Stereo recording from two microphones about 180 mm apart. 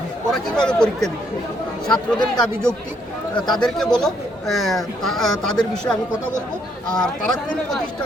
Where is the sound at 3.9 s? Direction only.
Centre (ahead or behind).